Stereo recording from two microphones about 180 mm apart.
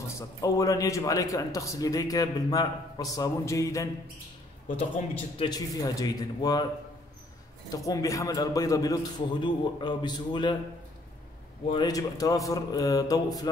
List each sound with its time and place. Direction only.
0.4 s a man's voice: 20° left (ahead or behind)
5.4 s a man's voice: 20° left (ahead or behind)
7.7 s a man's voice: 20° left (ahead or behind)
11.7 s a man's voice: 20° left (ahead or behind)